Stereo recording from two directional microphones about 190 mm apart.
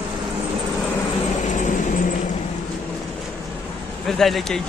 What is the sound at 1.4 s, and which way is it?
Vehicle, 40° left (ahead or behind).